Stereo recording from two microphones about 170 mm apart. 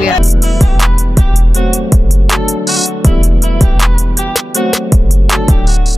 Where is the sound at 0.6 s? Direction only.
Centre (ahead or behind).